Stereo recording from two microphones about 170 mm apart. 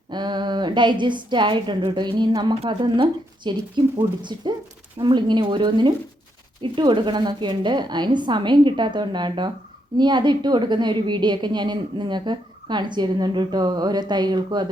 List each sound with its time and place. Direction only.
0.1 s a woman's voice: 25° right (ahead or behind)